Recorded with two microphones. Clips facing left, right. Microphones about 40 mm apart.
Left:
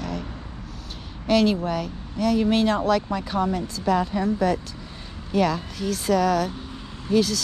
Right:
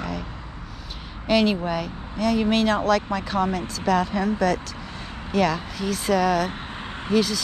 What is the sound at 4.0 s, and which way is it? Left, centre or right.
Speech, right.